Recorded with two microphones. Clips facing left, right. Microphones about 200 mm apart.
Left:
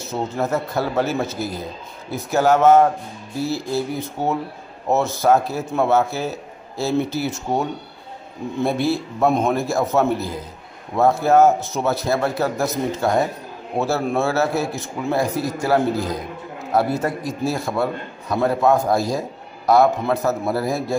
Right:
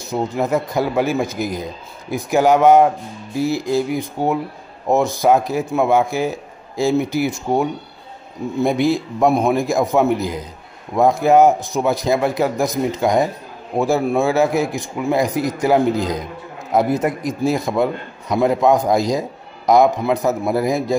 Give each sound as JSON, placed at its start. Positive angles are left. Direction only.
{"t": 0.0, "sound": "a man's voice", "side_deg": -15}